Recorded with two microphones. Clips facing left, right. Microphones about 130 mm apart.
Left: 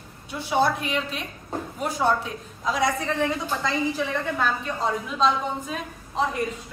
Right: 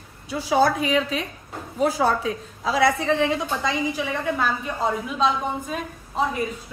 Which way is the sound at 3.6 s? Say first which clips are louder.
Even; 10° right (ahead or behind).